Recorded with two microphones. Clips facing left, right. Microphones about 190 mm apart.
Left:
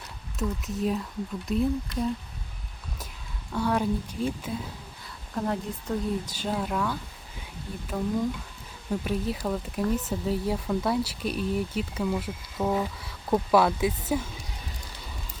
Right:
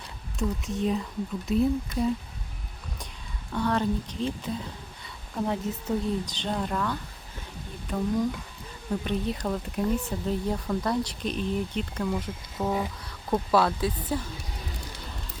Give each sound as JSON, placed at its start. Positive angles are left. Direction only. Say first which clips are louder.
{"t": 0.3, "sound": "speech", "louder": "right 1 dB", "side_deg": 0}
{"t": 1.9, "sound": "speech", "louder": "right 2 dB", "side_deg": -50}
{"t": 3.5, "sound": "speech", "louder": "even", "side_deg": 10}
{"t": 5.0, "sound": "speech", "louder": "even", "side_deg": 0}
{"t": 13.5, "sound": "speech", "louder": "left 2 dB", "side_deg": 15}